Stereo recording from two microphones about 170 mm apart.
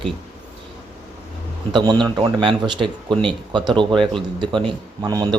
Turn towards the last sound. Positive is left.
turn(degrees=-25)  # may be behind; listen again after turning